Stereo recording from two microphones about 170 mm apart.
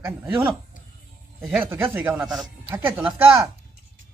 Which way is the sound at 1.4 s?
Centre (ahead or behind).